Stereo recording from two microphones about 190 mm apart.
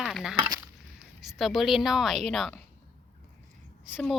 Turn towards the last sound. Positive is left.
turn(degrees=0)  # may be behind; listen again after turning